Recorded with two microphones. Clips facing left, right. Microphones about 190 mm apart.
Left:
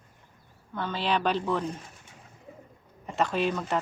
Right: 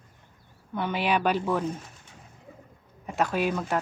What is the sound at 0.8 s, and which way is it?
Speech, 15° right (ahead or behind).